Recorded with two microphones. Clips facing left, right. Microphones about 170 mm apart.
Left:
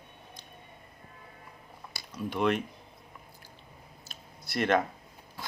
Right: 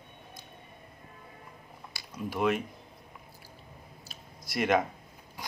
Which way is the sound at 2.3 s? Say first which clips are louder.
Even; 5° right (ahead or behind).